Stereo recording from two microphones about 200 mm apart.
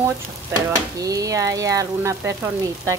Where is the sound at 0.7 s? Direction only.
15° right (ahead or behind).